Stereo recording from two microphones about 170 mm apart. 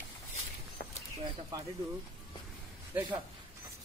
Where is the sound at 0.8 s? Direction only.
55° left (ahead or behind).